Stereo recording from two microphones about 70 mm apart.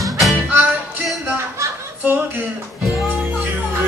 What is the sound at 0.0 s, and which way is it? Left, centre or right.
Music, centre.